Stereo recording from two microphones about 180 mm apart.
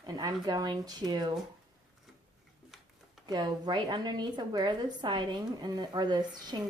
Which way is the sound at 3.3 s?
25° right (ahead or behind).